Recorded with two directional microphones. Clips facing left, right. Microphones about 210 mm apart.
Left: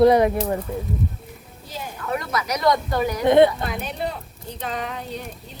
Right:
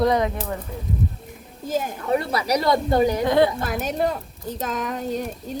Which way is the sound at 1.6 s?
45° right (ahead or behind).